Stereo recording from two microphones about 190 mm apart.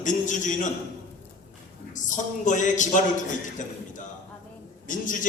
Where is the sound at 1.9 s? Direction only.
40° left (ahead or behind).